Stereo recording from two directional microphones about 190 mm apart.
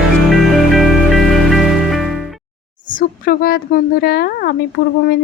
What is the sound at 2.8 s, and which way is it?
Speech, 45° left (ahead or behind).